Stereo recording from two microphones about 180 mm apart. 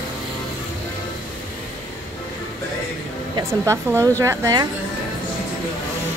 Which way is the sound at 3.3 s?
15° right (ahead or behind).